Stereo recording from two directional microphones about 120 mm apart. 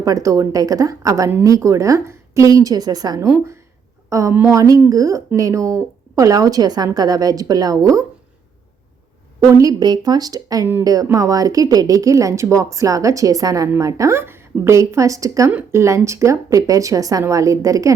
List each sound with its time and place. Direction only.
0.0 s speech: 30° right (ahead or behind)
9.6 s speech: 30° right (ahead or behind)